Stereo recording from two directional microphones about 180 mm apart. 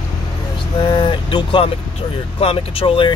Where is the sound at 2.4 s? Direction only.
30° left (ahead or behind).